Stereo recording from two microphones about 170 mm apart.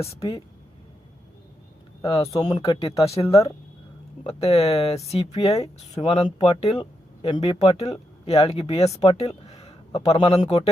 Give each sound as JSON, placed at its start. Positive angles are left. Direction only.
{"t": 0.2, "sound": "speech", "side_deg": 20}
{"t": 2.0, "sound": "speech", "side_deg": 20}
{"t": 2.7, "sound": "speech", "side_deg": 35}
{"t": 3.2, "sound": "speech", "side_deg": 20}
{"t": 4.2, "sound": "speech", "side_deg": 35}